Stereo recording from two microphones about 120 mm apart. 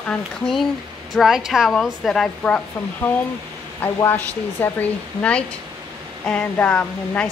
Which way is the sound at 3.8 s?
15° left (ahead or behind).